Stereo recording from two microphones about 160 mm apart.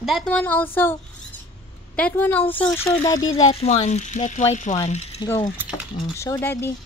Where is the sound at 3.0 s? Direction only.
25° left (ahead or behind).